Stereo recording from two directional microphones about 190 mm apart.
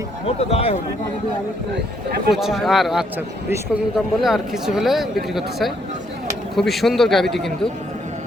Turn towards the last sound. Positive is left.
turn(degrees=0)  # may be behind; listen again after turning